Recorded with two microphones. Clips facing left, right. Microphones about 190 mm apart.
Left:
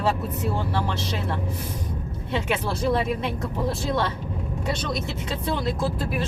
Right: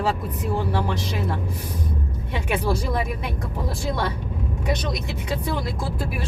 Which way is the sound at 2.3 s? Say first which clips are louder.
Right 1 dB; 10° right (ahead or behind).